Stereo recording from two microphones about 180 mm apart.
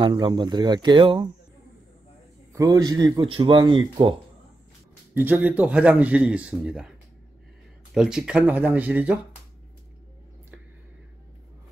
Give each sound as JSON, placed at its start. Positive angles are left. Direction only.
{"t": 0.0, "sound": "speech", "side_deg": -25}
{"t": 2.5, "sound": "speech", "side_deg": -20}
{"t": 5.1, "sound": "a man's voice", "side_deg": -10}
{"t": 7.9, "sound": "a man's voice", "side_deg": -5}